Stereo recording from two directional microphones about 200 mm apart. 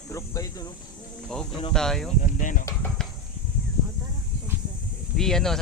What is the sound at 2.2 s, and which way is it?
Speech, 40° left (ahead or behind).